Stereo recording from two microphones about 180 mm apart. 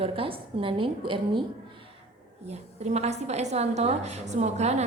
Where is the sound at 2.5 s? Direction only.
35° right (ahead or behind).